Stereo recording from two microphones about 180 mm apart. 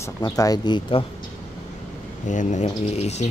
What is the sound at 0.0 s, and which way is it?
Speech, 20° left (ahead or behind).